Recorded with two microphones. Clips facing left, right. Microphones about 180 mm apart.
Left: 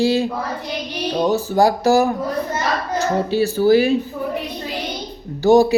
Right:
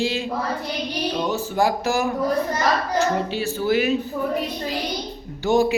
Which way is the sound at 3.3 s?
35° left (ahead or behind).